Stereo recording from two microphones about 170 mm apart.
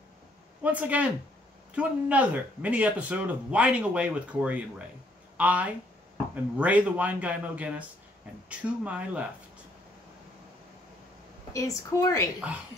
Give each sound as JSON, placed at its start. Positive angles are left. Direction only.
{"t": 0.7, "sound": "speech", "side_deg": -10}
{"t": 11.5, "sound": "a woman's voice", "side_deg": 20}